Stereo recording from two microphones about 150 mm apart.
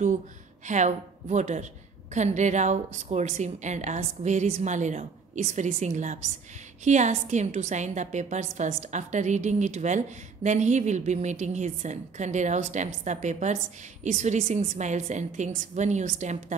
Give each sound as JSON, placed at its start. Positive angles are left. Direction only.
{"t": 0.7, "sound": "a woman's voice", "side_deg": -50}